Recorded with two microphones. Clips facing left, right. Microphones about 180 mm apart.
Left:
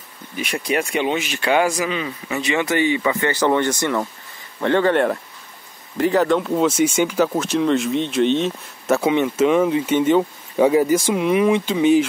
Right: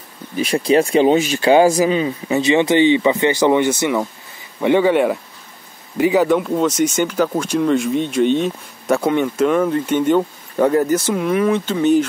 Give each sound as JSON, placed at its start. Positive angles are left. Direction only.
{"t": 0.4, "sound": "speech", "side_deg": -30}